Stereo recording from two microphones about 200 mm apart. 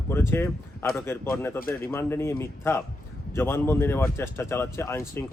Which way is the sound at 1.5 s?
45° left (ahead or behind).